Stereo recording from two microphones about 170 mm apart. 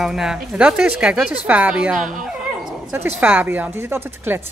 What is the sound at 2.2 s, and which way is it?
Dog, centre (ahead or behind).